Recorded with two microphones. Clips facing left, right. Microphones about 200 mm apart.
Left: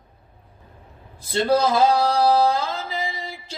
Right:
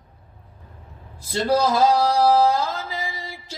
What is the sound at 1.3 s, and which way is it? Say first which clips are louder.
Singing: left 1 dB; 55° left (ahead or behind).